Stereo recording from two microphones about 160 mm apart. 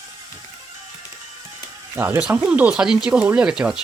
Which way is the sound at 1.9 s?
15° right (ahead or behind).